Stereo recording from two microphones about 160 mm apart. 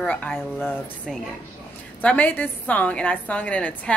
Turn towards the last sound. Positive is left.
turn(degrees=10)  # may be behind; listen again after turning